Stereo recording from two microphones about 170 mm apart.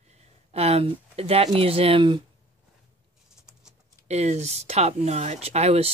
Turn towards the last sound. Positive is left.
turn(degrees=-40)  # may be behind; listen again after turning